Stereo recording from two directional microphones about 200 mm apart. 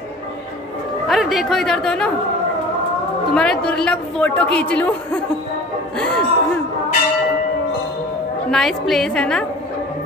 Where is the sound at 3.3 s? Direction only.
5° left (ahead or behind).